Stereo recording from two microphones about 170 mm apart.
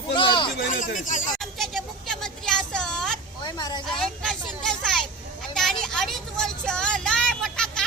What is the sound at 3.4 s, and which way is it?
Vehicle, 25° left (ahead or behind).